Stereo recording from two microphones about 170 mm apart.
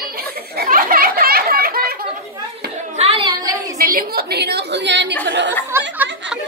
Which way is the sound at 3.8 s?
60° right (ahead or behind).